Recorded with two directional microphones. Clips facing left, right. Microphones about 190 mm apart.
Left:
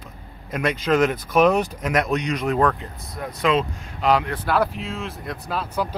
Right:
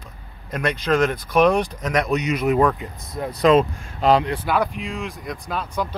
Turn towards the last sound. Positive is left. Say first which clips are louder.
# even
turn(degrees=5)  # may be behind; listen again after turning